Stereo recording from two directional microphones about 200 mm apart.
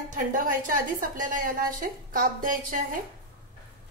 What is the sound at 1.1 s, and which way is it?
A woman's voice, 40° right (ahead or behind).